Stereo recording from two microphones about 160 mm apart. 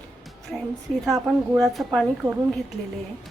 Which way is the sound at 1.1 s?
15° right (ahead or behind).